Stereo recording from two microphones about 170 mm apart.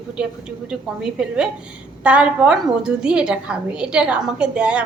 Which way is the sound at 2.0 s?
5° right (ahead or behind).